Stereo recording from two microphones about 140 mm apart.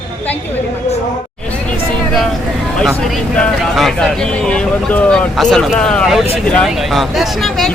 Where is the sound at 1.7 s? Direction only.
5° left (ahead or behind).